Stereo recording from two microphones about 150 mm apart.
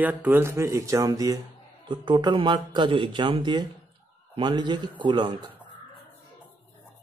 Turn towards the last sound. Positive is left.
turn(degrees=-30)  # may be behind; listen again after turning